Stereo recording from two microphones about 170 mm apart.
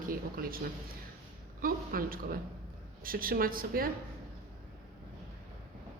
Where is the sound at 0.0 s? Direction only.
55° right (ahead or behind).